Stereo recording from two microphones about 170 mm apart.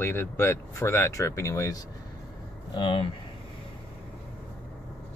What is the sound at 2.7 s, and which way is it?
Speech, 30° left (ahead or behind).